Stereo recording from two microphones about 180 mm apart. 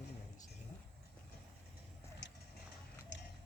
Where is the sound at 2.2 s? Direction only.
85° left.